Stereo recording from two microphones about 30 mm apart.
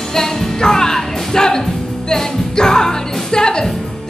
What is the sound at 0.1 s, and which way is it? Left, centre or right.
Music, centre.